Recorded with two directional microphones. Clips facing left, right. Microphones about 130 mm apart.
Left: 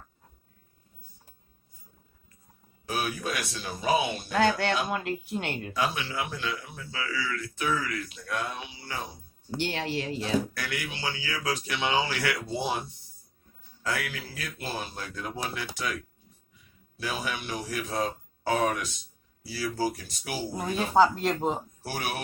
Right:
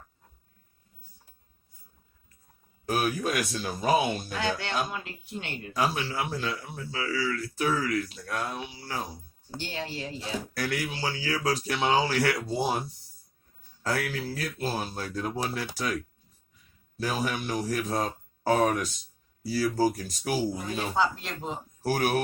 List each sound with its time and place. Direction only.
2.9 s speech: 45° right (ahead or behind)
4.3 s speech: 50° left (ahead or behind)
5.7 s speech: 35° right (ahead or behind)
9.6 s speech: 80° left
10.5 s speech: 35° right (ahead or behind)
13.8 s speech: 35° right (ahead or behind)
20.6 s speech: 40° left (ahead or behind)
21.8 s speech: 45° right (ahead or behind)